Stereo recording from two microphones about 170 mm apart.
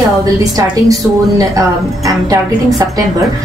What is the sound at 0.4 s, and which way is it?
Music, 20° right (ahead or behind).